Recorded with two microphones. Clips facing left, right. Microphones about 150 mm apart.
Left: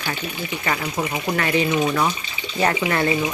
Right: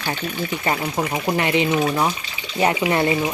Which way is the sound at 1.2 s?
25° right (ahead or behind).